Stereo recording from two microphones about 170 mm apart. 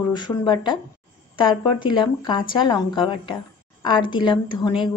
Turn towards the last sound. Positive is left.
turn(degrees=25)  # may be behind; listen again after turning